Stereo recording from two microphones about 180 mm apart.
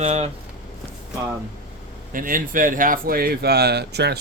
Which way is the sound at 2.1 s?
50° right (ahead or behind).